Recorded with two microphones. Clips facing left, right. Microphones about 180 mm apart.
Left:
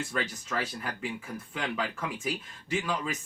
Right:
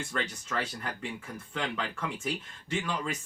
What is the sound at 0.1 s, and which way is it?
Speech, 5° left (ahead or behind).